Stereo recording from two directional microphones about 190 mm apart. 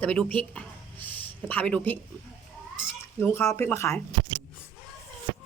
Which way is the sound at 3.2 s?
15° left (ahead or behind).